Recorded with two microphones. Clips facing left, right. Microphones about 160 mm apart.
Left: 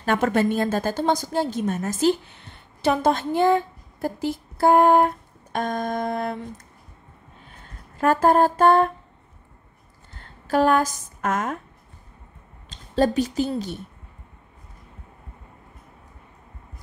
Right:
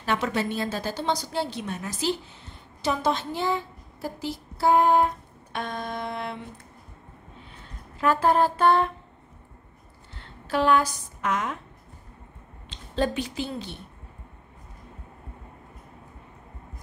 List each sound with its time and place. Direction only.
0.0 s a woman's voice: 50° left (ahead or behind)
8.0 s a sound: 45° left (ahead or behind)
10.1 s a woman's voice: 45° left (ahead or behind)
12.6 s a woman's voice: 40° left (ahead or behind)